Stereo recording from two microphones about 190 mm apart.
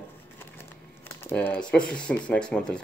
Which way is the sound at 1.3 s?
10° left (ahead or behind).